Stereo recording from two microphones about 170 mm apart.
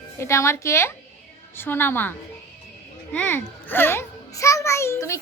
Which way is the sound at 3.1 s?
10° left (ahead or behind).